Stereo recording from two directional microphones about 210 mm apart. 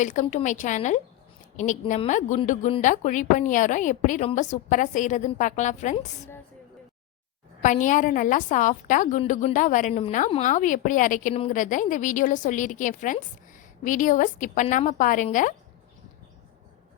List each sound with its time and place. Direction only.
0.0 s a woman's voice: 35° left (ahead or behind)
7.6 s a woman's voice: 35° left (ahead or behind)